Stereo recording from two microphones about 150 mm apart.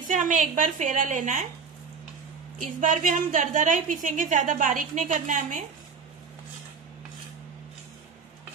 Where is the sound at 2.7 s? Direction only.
60° right (ahead or behind).